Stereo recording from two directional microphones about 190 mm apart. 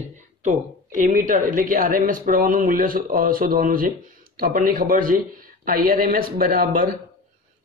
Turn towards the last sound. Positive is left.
turn(degrees=-45)  # may be behind; listen again after turning